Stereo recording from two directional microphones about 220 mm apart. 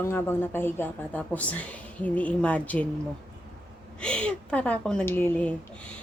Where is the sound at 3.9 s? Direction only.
5° left (ahead or behind).